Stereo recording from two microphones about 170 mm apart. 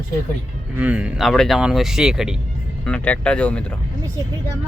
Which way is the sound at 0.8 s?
5° right (ahead or behind).